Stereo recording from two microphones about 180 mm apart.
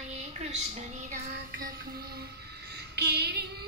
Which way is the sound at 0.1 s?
35° right (ahead or behind).